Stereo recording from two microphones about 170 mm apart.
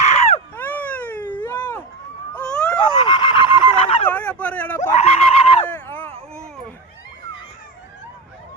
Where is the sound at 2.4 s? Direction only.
5° left (ahead or behind).